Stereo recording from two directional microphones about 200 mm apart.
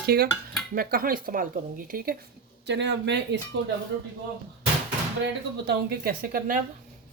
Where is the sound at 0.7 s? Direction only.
45° right (ahead or behind).